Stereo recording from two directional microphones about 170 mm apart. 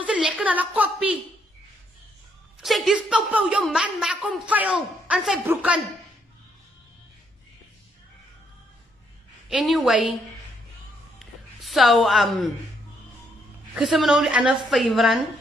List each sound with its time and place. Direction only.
0.0 s a woman's voice: 5° right (ahead or behind)
2.6 s a woman's voice: centre (ahead or behind)
9.5 s a woman's voice: centre (ahead or behind)
11.1 s a sound: centre (ahead or behind)
13.7 s a woman's voice: centre (ahead or behind)